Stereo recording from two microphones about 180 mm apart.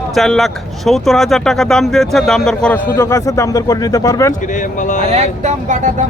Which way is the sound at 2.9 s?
15° left (ahead or behind).